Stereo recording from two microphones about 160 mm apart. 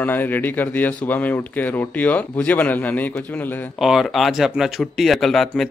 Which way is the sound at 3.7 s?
Centre (ahead or behind).